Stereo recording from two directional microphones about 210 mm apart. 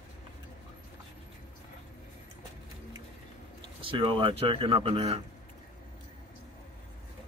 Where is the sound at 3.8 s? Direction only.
25° right (ahead or behind).